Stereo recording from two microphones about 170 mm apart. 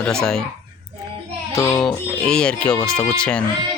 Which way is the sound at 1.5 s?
20° left (ahead or behind).